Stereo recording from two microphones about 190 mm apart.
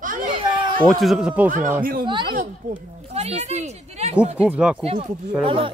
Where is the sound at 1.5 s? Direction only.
45° right (ahead or behind).